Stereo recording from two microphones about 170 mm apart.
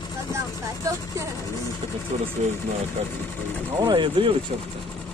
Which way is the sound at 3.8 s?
30° right (ahead or behind).